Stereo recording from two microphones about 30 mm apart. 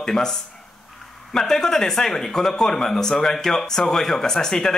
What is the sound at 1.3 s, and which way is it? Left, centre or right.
A man's voice, centre.